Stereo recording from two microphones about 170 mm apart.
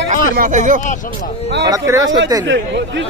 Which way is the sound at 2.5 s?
90° right.